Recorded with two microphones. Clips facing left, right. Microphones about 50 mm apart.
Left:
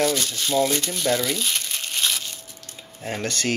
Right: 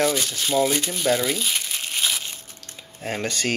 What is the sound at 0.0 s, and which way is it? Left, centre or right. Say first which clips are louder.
Speech: even; centre.